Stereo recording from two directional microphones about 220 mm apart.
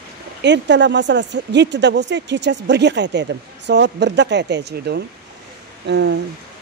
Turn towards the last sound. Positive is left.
turn(degrees=-50)  # may be behind; listen again after turning